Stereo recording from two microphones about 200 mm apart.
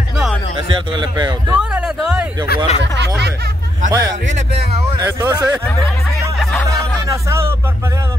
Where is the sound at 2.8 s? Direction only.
60° right (ahead or behind).